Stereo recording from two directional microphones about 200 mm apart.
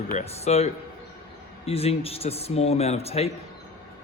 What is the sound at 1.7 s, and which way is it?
A man's voice, 30° left (ahead or behind).